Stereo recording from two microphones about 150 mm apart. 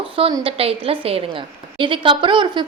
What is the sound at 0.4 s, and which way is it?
Speech, 40° right (ahead or behind).